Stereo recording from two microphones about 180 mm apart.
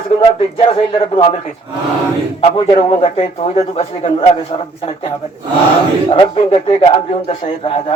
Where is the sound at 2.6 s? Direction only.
30° left (ahead or behind).